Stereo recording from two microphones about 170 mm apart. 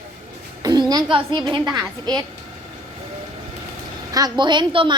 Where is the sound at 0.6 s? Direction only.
25° right (ahead or behind).